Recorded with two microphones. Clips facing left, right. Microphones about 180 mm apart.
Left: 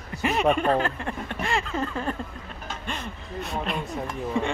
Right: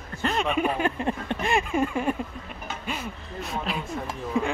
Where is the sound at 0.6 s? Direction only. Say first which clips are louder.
Left 1 dB; 15° right (ahead or behind).